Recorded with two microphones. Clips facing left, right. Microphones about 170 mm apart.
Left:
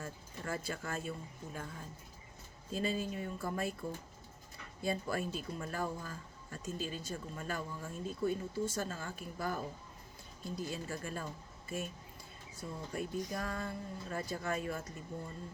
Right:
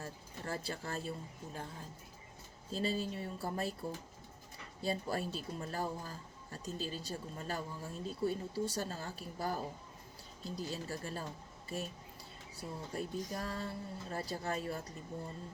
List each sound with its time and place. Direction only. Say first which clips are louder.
0.0 s a sound: left 1 dB; 35° right (ahead or behind)
2.7 s speech: even; 35° right (ahead or behind)
12.5 s speech: left 1 dB; 35° right (ahead or behind)